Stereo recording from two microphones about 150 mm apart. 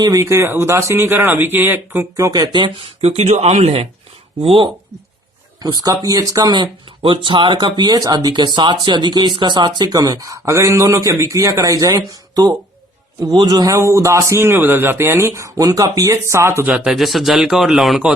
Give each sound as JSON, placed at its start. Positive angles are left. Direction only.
{"t": 0.0, "sound": "a man's voice", "side_deg": -20}
{"t": 3.0, "sound": "a man's voice", "side_deg": -45}